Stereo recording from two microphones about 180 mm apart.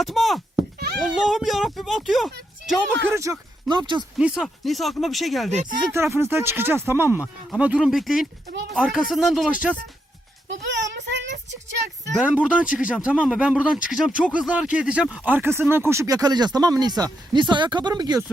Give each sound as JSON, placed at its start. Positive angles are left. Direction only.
{"t": 0.0, "sound": "speech", "side_deg": 0}
{"t": 3.1, "sound": "speech", "side_deg": -15}
{"t": 4.2, "sound": "speech", "side_deg": -5}
{"t": 5.5, "sound": "speech", "side_deg": -40}
{"t": 5.9, "sound": "speech", "side_deg": -15}
{"t": 10.5, "sound": "child singing", "side_deg": -85}
{"t": 12.2, "sound": "speech", "side_deg": -5}